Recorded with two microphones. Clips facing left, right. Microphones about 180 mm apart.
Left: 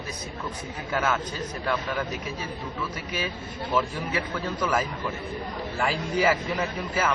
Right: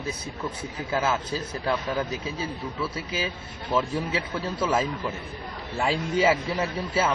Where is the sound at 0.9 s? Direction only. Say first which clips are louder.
Right 1 dB; 25° right (ahead or behind).